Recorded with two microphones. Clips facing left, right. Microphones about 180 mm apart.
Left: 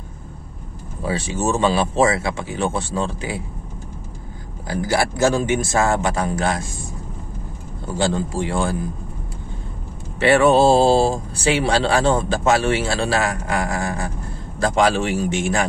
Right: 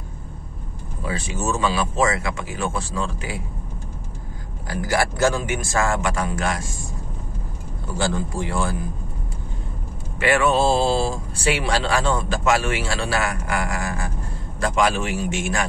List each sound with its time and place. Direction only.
1.0 s speech: 30° left (ahead or behind)
4.9 s speech: 25° left (ahead or behind)
8.0 s speech: 25° left (ahead or behind)
10.2 s speech: 35° left (ahead or behind)